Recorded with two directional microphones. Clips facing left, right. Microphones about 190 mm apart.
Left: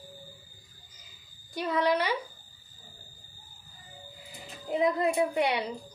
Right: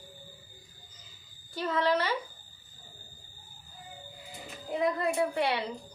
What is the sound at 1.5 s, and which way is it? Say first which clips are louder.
Speech: left 1 dB; 15° left (ahead or behind).